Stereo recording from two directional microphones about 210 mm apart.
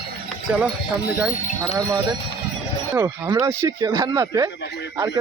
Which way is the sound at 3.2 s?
15° right (ahead or behind).